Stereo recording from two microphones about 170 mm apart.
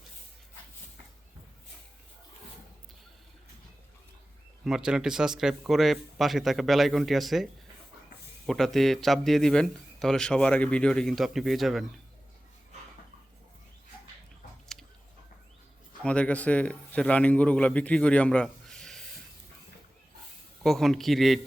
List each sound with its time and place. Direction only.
4.6 s speech: 5° right (ahead or behind)
8.4 s speech: centre (ahead or behind)
16.0 s a man's voice: 10° left (ahead or behind)
20.6 s speech: centre (ahead or behind)